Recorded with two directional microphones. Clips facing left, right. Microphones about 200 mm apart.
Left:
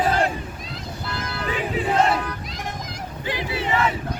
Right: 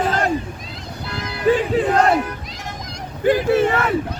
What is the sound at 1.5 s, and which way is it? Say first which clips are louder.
Battle cry: right 13 dB; 40° right (ahead or behind).